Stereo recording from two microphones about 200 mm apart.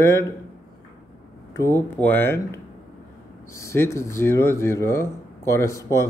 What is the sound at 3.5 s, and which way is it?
Speech, 15° left (ahead or behind).